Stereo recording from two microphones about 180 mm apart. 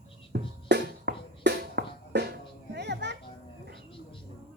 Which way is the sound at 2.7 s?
70° right (ahead or behind).